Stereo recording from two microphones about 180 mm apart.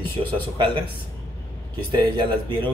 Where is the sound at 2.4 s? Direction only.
25° right (ahead or behind).